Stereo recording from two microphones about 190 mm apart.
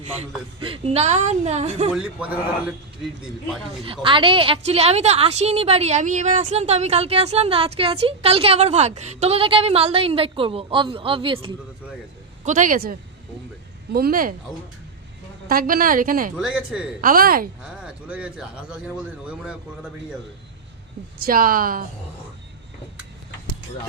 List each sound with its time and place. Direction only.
0.2 s a woman's voice: 30° right (ahead or behind)
1.9 s speech: 5° right (ahead or behind)
3.8 s a woman's voice: 25° right (ahead or behind)
12.5 s a woman's voice: 45° right (ahead or behind)
15.4 s a woman's voice: 50° right (ahead or behind)
16.4 s speech: 5° right (ahead or behind)
17.0 s a woman's voice: 50° right (ahead or behind)
17.6 s speech: 5° right (ahead or behind)
21.2 s a woman's voice: 50° right (ahead or behind)